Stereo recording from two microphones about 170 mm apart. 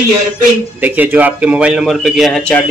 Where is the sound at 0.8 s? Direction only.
10° right (ahead or behind).